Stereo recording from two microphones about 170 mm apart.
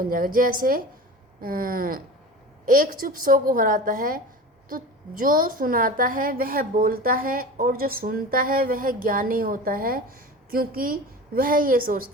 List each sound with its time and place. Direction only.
0.0 s a woman's voice: 55° right (ahead or behind)